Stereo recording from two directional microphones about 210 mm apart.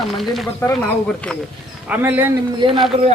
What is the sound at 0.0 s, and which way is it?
Speech, centre (ahead or behind).